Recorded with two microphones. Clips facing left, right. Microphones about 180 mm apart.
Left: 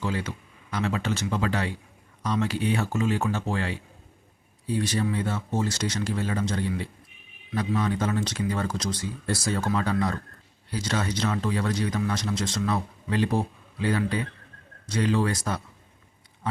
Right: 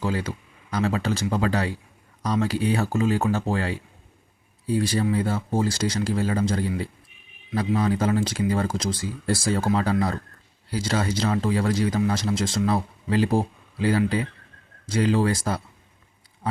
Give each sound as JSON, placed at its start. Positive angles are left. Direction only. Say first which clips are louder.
{"t": 0.0, "sound": "speech", "louder": "right 3 dB", "side_deg": -35}